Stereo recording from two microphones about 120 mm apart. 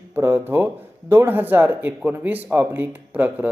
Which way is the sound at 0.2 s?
20° right (ahead or behind).